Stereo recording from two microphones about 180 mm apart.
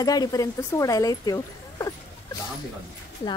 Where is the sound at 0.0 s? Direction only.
20° left (ahead or behind).